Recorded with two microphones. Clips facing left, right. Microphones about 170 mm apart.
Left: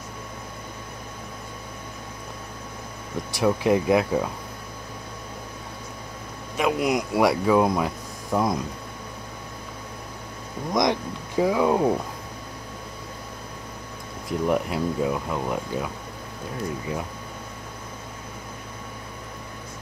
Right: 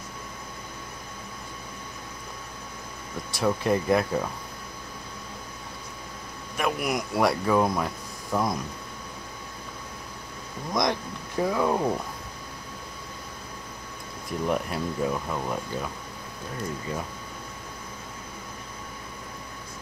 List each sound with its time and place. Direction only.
3.3 s speech: 15° left (ahead or behind)
6.5 s speech: 20° left (ahead or behind)
10.7 s speech: 15° left (ahead or behind)
14.5 s speech: 15° left (ahead or behind)